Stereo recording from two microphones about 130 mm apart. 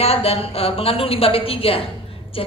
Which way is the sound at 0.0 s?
50° left (ahead or behind).